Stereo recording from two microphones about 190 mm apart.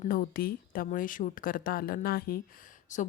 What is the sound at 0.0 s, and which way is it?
A woman's voice, 50° left (ahead or behind).